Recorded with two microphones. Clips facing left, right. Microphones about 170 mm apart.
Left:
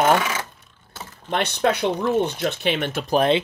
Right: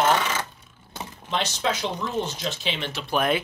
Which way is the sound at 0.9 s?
15° right (ahead or behind).